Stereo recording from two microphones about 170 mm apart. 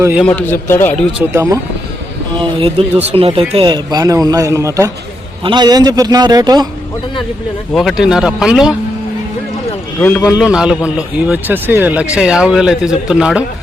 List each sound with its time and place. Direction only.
0.3 s a man's voice: 10° left (ahead or behind)
1.3 s speech: 15° right (ahead or behind)
2.3 s speech: 30° right (ahead or behind)
7.7 s a man's voice: centre (ahead or behind)
10.0 s a man's voice: 10° left (ahead or behind)
10.2 s a man's voice: centre (ahead or behind)